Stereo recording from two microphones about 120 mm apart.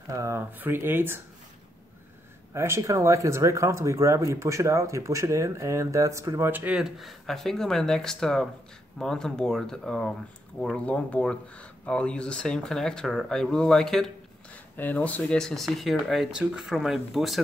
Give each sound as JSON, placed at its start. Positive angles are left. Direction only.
{"t": 0.1, "sound": "speech", "side_deg": -25}
{"t": 2.5, "sound": "speech", "side_deg": -25}